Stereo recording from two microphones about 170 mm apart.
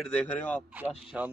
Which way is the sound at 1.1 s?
Centre (ahead or behind).